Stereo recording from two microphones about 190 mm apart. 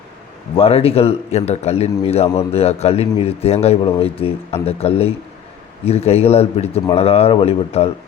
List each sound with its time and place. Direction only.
0.5 s a man's voice: 30° left (ahead or behind)